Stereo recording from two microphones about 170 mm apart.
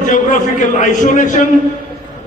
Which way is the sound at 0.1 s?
45° left (ahead or behind).